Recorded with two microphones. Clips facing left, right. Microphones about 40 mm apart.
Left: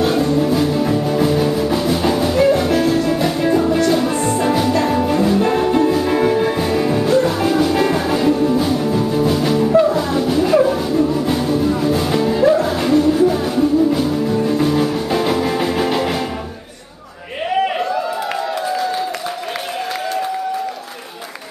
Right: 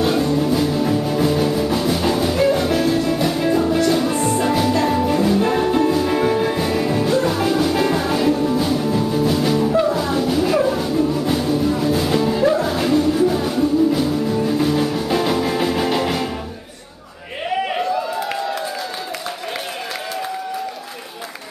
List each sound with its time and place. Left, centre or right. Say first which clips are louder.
0.0 s music: left 2 dB; centre